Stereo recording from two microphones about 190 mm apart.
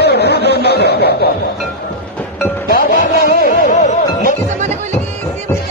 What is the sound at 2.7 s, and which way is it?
Music, 50° left (ahead or behind).